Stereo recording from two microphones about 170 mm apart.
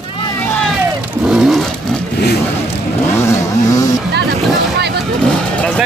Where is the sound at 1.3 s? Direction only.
5° right (ahead or behind).